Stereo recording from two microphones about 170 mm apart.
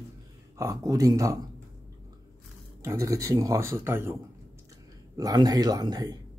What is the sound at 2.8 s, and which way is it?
A man's voice, 20° right (ahead or behind).